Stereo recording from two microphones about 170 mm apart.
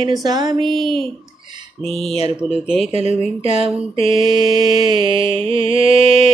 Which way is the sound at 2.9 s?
35° right (ahead or behind).